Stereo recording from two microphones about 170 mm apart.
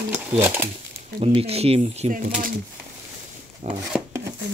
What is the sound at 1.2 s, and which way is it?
Speech, 35° right (ahead or behind).